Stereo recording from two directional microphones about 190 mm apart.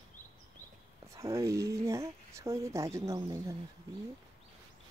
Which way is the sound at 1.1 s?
15° right (ahead or behind).